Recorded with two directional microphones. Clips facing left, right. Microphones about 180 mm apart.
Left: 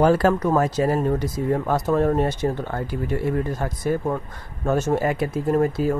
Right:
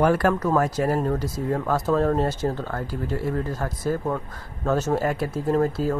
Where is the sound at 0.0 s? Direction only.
30° left (ahead or behind).